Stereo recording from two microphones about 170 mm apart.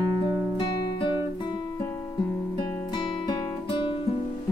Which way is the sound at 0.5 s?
30° left (ahead or behind).